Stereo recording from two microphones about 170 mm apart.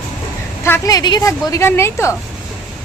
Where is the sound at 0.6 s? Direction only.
15° left (ahead or behind).